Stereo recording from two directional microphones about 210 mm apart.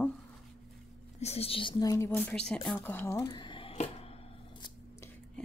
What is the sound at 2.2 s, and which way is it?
Speech, 5° left (ahead or behind).